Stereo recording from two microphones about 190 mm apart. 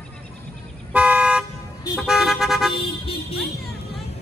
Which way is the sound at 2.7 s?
30° left (ahead or behind).